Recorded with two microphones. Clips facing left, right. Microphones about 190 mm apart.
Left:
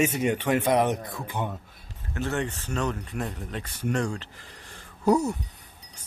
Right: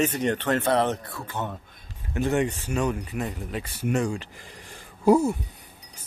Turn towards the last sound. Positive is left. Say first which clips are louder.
# right 3 dB
turn(degrees=-10)  # may be behind; listen again after turning